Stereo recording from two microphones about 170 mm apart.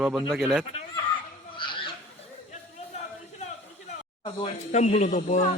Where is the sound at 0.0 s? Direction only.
5° right (ahead or behind).